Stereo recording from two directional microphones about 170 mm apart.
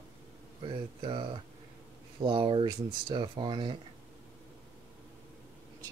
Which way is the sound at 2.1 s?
30° right (ahead or behind).